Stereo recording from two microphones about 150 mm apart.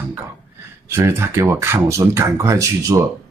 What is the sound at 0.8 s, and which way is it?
Speech, 15° right (ahead or behind).